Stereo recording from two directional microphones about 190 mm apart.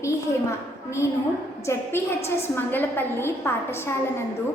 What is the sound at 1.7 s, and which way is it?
A woman's voice, 15° left (ahead or behind).